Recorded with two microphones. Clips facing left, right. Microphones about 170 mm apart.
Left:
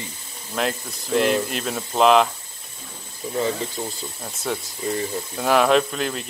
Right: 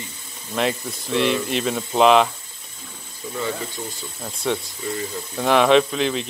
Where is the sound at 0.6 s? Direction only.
Centre (ahead or behind).